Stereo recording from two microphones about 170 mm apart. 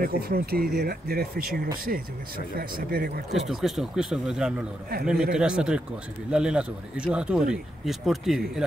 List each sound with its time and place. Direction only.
0.0 s speech: 65° right (ahead or behind)
3.3 s speech: centre (ahead or behind)